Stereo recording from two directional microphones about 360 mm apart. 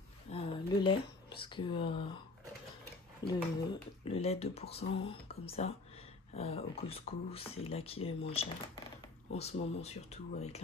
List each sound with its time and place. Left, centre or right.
0.3 s speech: centre
3.2 s speech: centre